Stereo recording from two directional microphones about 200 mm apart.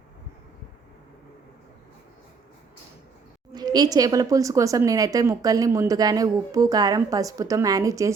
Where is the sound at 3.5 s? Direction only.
20° right (ahead or behind).